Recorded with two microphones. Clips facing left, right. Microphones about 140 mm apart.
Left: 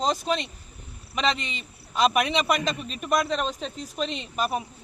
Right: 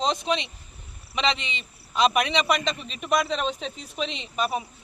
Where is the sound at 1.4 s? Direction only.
45° left (ahead or behind).